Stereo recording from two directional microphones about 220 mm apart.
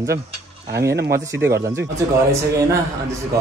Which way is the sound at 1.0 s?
15° right (ahead or behind).